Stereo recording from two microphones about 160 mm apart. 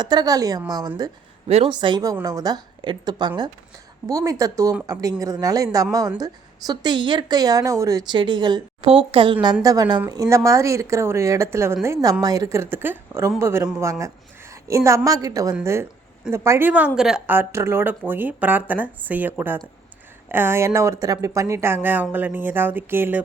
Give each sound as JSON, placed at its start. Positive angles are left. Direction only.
{"t": 0.0, "sound": "speech", "side_deg": -25}
{"t": 1.5, "sound": "speech", "side_deg": -40}
{"t": 1.7, "sound": "speech", "side_deg": -30}
{"t": 14.7, "sound": "speech", "side_deg": -20}